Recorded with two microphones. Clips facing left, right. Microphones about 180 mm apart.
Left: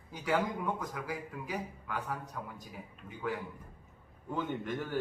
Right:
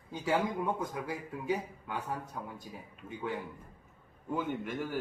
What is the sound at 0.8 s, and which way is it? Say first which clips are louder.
Speech: right 2 dB; 25° right (ahead or behind).